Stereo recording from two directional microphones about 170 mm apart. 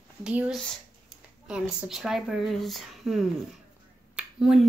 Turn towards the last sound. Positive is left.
turn(degrees=0)  # may be behind; listen again after turning